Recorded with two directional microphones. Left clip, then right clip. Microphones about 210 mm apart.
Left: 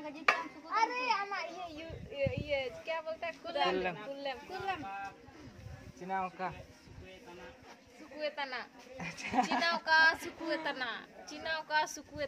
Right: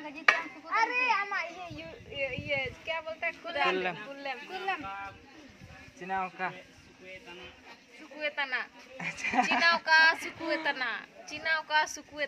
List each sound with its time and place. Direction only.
0.7 s children playing: 15° right (ahead or behind)
5.9 s speech: 20° right (ahead or behind)
8.2 s speech: 10° right (ahead or behind)
9.8 s a woman's voice: 5° right (ahead or behind)
10.1 s speech: 20° right (ahead or behind)
10.6 s a woman's voice: 5° right (ahead or behind)